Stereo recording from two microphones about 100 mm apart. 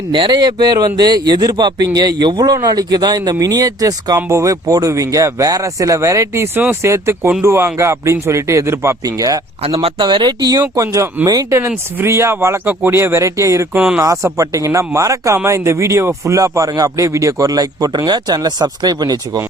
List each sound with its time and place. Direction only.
0.1 s a man's voice: 50° right (ahead or behind)
9.6 s speech: 75° right (ahead or behind)
10.0 s speech: 50° right (ahead or behind)
10.8 s a man's voice: 30° right (ahead or behind)
13.7 s speech: 10° right (ahead or behind)
14.0 s a man's voice: 30° right (ahead or behind)